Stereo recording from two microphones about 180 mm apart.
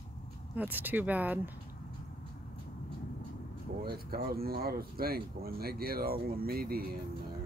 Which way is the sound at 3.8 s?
55° right (ahead or behind).